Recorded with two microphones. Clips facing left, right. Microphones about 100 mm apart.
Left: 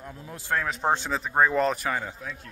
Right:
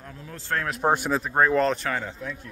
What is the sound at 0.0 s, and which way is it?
Speech, 20° left (ahead or behind).